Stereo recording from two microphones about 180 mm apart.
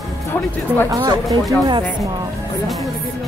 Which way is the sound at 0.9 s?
20° right (ahead or behind).